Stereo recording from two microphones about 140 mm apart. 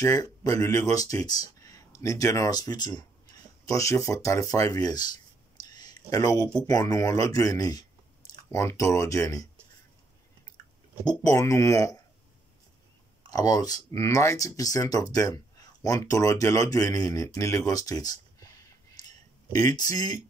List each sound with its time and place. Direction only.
0.0 s speech: 25° left (ahead or behind)
11.1 s speech: 25° left (ahead or behind)
13.2 s speech: 25° left (ahead or behind)
18.9 s a sound: 30° left (ahead or behind)